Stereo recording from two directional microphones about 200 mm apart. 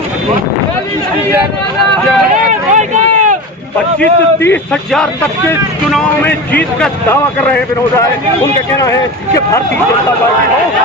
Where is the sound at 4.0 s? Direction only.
10° left (ahead or behind).